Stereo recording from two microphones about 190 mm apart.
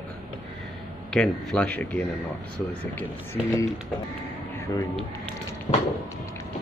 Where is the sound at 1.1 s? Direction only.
5° left (ahead or behind).